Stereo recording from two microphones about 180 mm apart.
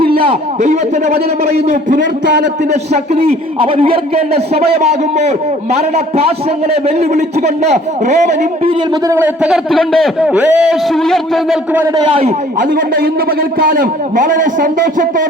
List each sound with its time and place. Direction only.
0.1 s a man's voice: 35° right (ahead or behind)
8.7 s a man's voice: 20° right (ahead or behind)
11.9 s a man's voice: 25° right (ahead or behind)
12.5 s a man's voice: 50° right (ahead or behind)